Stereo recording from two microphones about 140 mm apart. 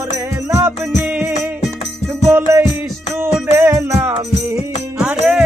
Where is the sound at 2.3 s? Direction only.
15° right (ahead or behind).